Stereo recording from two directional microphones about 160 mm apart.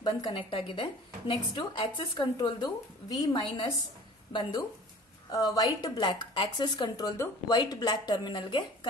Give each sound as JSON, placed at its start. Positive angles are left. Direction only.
{"t": 0.0, "sound": "a woman's voice", "side_deg": 30}